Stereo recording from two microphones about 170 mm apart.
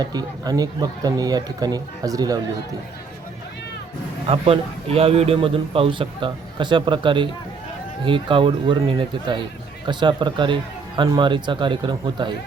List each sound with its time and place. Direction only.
0.0 s speech: 25° right (ahead or behind)
4.3 s a man's voice: 35° right (ahead or behind)